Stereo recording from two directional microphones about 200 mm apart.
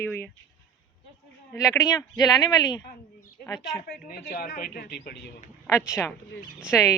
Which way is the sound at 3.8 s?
50° left (ahead or behind).